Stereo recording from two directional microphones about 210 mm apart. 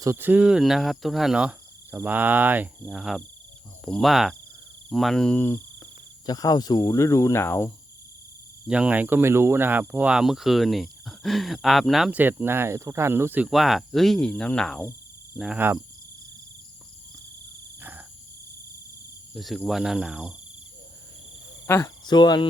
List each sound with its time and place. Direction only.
0.0 s speech: 10° right (ahead or behind); by 7.7 s 10° left (ahead or behind)
8.6 s speech: 5° right (ahead or behind)
15.4 s speech: 5° right (ahead or behind)
17.7 s cricket: 10° right (ahead or behind)
19.3 s speech: centre (ahead or behind)
21.7 s cricket: 15° left (ahead or behind)